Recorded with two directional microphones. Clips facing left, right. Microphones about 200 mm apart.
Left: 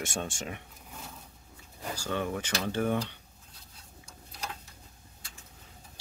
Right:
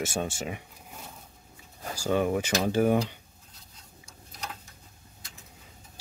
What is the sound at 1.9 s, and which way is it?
Speech, 10° right (ahead or behind).